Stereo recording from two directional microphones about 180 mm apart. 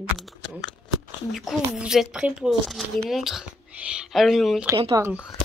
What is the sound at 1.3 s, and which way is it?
Speech, centre (ahead or behind).